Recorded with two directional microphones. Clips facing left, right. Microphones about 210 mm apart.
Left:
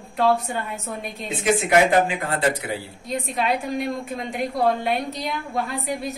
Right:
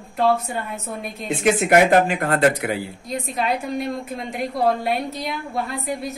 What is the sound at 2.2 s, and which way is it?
Speech, 60° right (ahead or behind).